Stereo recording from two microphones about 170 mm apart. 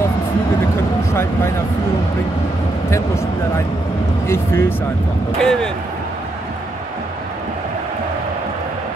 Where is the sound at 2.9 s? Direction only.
15° left (ahead or behind).